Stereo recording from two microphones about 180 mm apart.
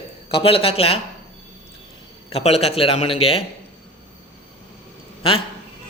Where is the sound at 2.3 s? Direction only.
35° left (ahead or behind).